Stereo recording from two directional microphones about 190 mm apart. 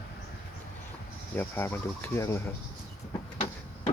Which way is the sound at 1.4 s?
10° left (ahead or behind).